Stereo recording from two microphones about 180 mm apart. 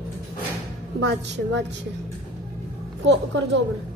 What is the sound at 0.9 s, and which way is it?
Speech, 75° right (ahead or behind).